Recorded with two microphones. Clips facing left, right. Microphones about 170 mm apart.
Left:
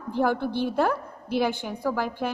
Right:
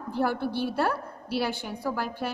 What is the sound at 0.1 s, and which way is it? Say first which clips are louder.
A woman's voice: left 3 dB; 15° left (ahead or behind).